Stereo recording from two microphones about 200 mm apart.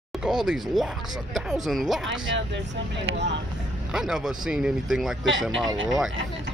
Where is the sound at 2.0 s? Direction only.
65° right (ahead or behind).